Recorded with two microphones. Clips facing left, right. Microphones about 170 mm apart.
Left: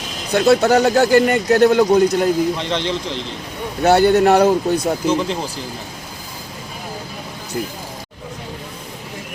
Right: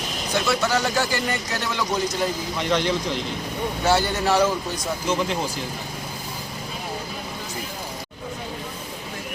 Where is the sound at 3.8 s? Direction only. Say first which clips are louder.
Left 10 dB; 60° left (ahead or behind).